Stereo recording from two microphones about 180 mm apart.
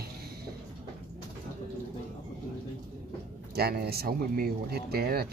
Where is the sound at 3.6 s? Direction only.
60° right (ahead or behind).